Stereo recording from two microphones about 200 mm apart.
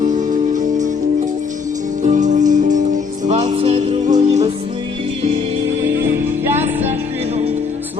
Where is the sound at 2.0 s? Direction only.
35° right (ahead or behind); by 4.4 s 20° right (ahead or behind).